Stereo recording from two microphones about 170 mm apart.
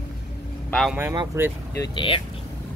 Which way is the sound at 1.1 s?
25° right (ahead or behind).